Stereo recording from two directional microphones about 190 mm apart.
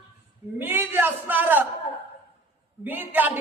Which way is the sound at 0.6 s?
10° right (ahead or behind).